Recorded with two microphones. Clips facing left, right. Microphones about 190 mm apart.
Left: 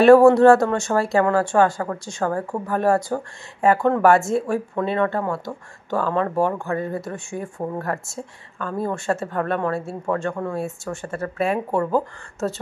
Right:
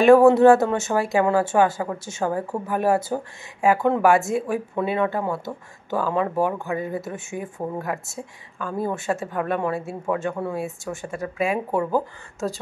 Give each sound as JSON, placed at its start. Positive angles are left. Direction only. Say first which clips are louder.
{"t": 0.0, "sound": "speech", "louder": "left 2 dB", "side_deg": 0}
{"t": 1.1, "sound": "speech", "louder": "left 1 dB", "side_deg": -20}
{"t": 1.4, "sound": "speech", "louder": "left 1 dB", "side_deg": -5}